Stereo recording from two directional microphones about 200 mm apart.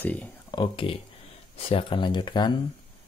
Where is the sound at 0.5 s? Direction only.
25° left (ahead or behind).